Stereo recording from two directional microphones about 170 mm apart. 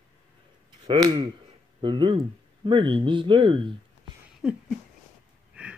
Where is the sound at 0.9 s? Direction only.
25° right (ahead or behind).